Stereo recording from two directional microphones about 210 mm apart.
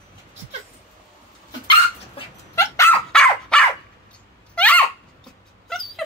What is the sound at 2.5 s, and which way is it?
Dog, 10° left (ahead or behind).